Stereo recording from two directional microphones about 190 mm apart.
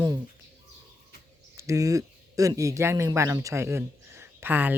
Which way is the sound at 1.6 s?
15° right (ahead or behind).